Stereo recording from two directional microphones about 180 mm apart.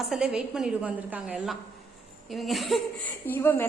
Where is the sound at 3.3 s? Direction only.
10° left (ahead or behind).